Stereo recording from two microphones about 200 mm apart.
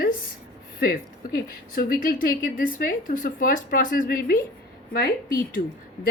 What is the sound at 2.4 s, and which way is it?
Speech, 45° left (ahead or behind).